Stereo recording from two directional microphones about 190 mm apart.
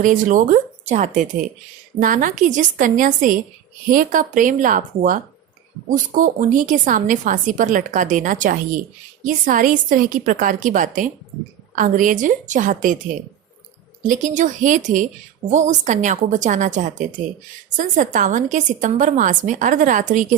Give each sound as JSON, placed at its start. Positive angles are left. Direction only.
{"t": 0.0, "sound": "a woman's voice", "side_deg": -45}
{"t": 14.1, "sound": "a woman's voice", "side_deg": -40}